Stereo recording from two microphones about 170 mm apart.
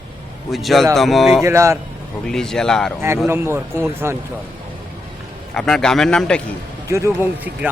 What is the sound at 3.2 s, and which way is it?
Speech, 15° right (ahead or behind).